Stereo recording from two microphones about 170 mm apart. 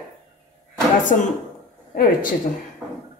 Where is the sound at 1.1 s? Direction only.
55° left (ahead or behind).